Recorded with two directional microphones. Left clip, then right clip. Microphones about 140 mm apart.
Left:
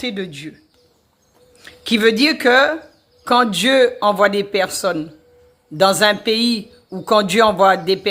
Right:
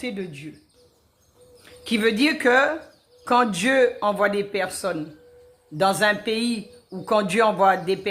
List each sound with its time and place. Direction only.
0.0 s speech: 55° left (ahead or behind)
1.6 s speech: 50° left (ahead or behind)